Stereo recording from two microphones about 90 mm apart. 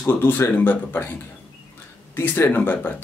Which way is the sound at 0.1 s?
20° left (ahead or behind).